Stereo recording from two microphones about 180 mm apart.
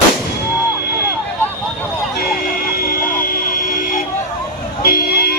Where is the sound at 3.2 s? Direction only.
50° left (ahead or behind).